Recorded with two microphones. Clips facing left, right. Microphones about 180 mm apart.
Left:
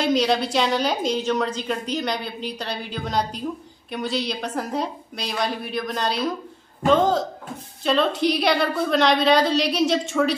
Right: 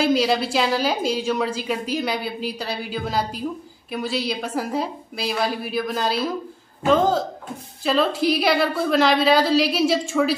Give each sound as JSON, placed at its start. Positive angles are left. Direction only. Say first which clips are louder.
{"t": 0.0, "sound": "a woman's voice", "louder": "right 1 dB", "side_deg": -5}